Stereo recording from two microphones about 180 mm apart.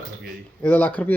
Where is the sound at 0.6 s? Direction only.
10° left (ahead or behind).